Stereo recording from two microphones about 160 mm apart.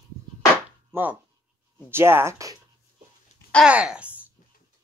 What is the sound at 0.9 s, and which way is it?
Speech, 15° right (ahead or behind).